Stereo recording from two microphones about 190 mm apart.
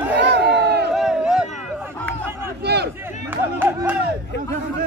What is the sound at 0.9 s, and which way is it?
Crowd, 5° right (ahead or behind).